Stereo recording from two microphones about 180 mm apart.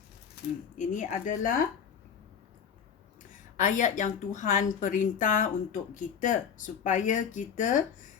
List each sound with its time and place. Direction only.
0.8 s speech: 45° left (ahead or behind)
3.6 s speech: 45° left (ahead or behind)